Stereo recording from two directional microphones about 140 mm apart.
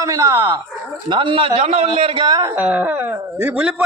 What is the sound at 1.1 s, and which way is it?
A man's voice, 35° right (ahead or behind).